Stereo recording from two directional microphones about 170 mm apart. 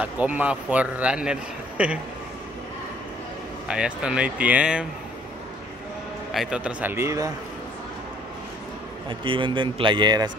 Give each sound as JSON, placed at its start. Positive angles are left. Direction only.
{"t": 0.0, "sound": "a man's voice", "side_deg": -10}
{"t": 3.6, "sound": "a man's voice", "side_deg": -5}
{"t": 6.3, "sound": "a man's voice", "side_deg": -5}
{"t": 9.2, "sound": "a man's voice", "side_deg": -30}